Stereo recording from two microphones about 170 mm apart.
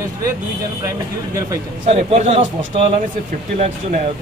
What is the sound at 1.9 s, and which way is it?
Speech, 35° right (ahead or behind).